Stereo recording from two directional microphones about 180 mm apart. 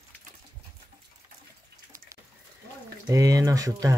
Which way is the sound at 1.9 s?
15° right (ahead or behind).